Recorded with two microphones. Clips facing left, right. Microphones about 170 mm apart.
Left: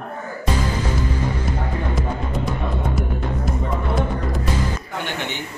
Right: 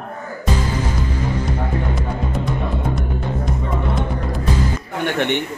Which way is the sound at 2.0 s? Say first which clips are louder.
Right 1 dB; centre (ahead or behind).